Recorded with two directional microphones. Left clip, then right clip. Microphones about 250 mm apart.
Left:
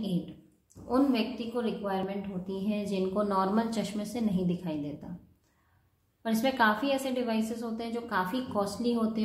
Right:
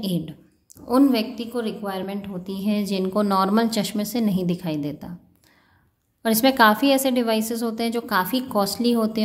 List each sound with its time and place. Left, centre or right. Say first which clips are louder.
0.8 s a woman's voice: right 8 dB; right
6.2 s a woman's voice: right 10 dB; right